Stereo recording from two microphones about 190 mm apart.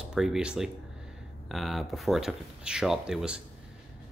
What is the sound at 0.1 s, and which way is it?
Speech, 5° right (ahead or behind).